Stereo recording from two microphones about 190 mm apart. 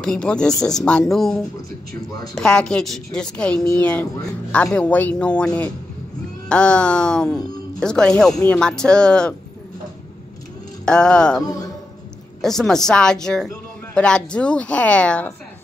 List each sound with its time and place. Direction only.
0.0 s speech: 5° left (ahead or behind)
10.9 s speech: 5° left (ahead or behind)
11.4 s a man's voice: 20° left (ahead or behind)
12.4 s speech: centre (ahead or behind)